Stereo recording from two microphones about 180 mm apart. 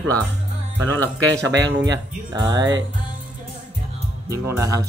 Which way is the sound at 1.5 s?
80° right.